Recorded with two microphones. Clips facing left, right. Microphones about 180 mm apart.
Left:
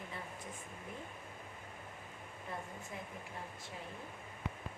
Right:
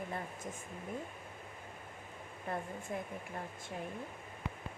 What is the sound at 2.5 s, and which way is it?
Speech, 60° right (ahead or behind).